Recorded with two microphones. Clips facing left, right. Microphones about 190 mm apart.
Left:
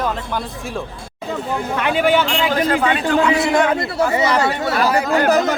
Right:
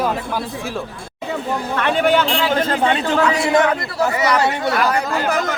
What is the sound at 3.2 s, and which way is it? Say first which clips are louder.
Speech: left 1 dB; 20° left (ahead or behind).